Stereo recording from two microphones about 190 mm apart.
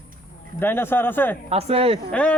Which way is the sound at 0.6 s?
10° left (ahead or behind).